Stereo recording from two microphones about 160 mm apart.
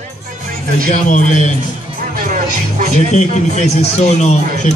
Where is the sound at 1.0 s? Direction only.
50° left (ahead or behind).